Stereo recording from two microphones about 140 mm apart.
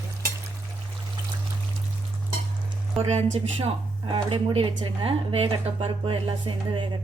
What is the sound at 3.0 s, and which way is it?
Speech, 50° right (ahead or behind).